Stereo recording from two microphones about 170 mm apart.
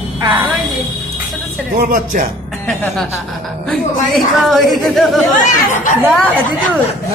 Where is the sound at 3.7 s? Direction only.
Centre (ahead or behind).